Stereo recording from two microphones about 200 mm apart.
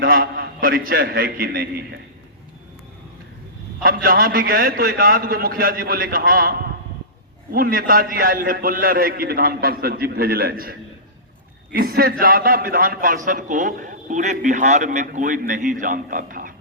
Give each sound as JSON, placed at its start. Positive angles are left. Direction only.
{"t": 0.0, "sound": "a man's voice", "side_deg": -50}
{"t": 3.8, "sound": "a man's voice", "side_deg": -45}